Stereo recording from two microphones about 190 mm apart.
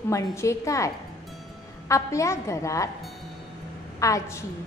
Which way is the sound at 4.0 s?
15° left (ahead or behind).